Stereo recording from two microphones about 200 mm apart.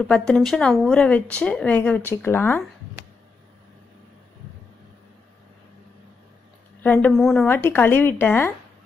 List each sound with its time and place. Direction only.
0.0 s speech: 5° left (ahead or behind)
6.8 s speech: 10° left (ahead or behind)